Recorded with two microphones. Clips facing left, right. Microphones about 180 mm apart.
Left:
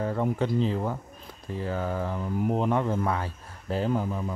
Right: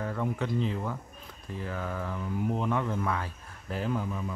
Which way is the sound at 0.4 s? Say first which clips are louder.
Left 5 dB; 30° left (ahead or behind).